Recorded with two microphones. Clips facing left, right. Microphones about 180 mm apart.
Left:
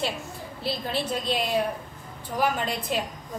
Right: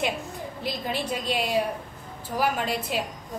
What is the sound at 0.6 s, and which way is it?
A woman's voice, 15° right (ahead or behind).